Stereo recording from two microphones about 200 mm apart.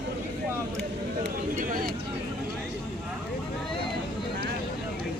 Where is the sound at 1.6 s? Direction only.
45° right (ahead or behind).